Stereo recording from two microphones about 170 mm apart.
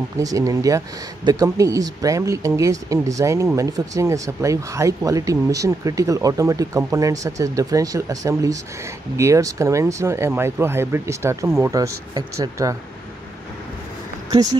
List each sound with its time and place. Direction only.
0.2 s speech: 20° right (ahead or behind)